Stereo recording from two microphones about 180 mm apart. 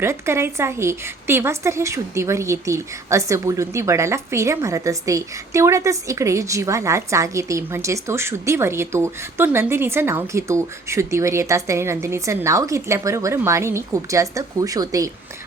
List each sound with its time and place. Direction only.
0.0 s a woman's voice: 15° right (ahead or behind)